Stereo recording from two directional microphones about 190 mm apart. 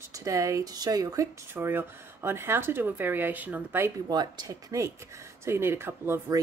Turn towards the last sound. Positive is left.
turn(degrees=-10)  # may be behind; listen again after turning